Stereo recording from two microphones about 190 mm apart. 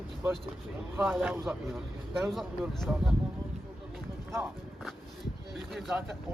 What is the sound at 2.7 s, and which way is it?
Speech, centre (ahead or behind).